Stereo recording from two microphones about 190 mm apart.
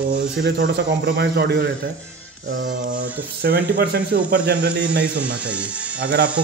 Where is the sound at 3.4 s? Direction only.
60° right (ahead or behind).